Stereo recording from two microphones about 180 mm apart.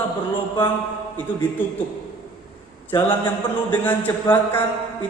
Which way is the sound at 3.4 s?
30° left (ahead or behind).